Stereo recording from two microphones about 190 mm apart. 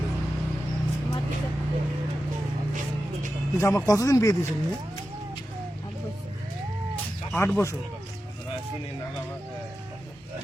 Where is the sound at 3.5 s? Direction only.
15° left (ahead or behind).